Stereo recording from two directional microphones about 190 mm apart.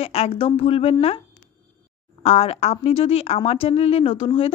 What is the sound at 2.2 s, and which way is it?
Speech, 35° left (ahead or behind).